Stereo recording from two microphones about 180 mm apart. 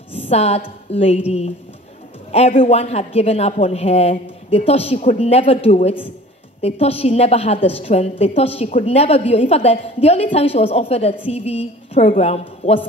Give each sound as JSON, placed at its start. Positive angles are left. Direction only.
{"t": 0.1, "sound": "a woman's voice", "side_deg": 35}
{"t": 2.3, "sound": "a woman's voice", "side_deg": 35}